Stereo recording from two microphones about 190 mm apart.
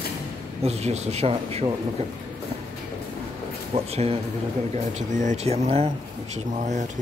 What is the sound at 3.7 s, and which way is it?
Speech, 35° right (ahead or behind).